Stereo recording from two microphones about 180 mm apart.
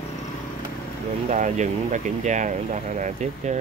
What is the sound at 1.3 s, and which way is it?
Speech, 45° right (ahead or behind).